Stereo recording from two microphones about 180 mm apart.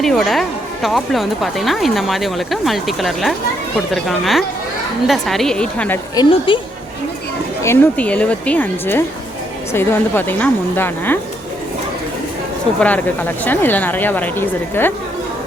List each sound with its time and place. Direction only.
0.0 s speech: centre (ahead or behind)
6.1 s a woman's voice: 25° left (ahead or behind)
7.6 s speech: 10° left (ahead or behind)
12.8 s speech: 10° left (ahead or behind)